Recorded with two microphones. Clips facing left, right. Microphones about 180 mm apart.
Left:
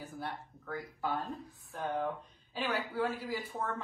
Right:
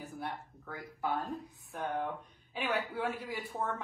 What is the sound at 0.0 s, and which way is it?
Speech, centre (ahead or behind).